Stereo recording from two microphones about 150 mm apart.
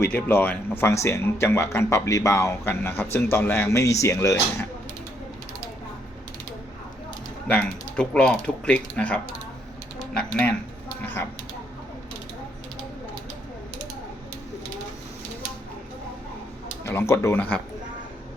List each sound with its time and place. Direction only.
0.0 s speech: 15° left (ahead or behind)
7.4 s speech: 10° left (ahead or behind)
16.8 s speech: 15° left (ahead or behind)